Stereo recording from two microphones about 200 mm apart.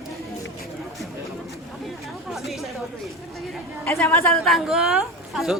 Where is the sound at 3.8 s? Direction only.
10° left (ahead or behind).